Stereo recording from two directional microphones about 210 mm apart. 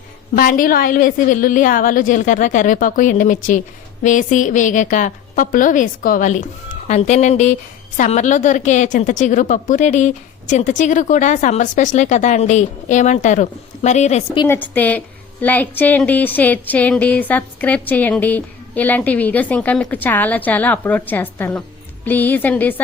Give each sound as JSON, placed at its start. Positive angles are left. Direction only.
{"t": 0.3, "sound": "a woman's voice", "side_deg": 40}
{"t": 14.4, "sound": "a woman's voice", "side_deg": 10}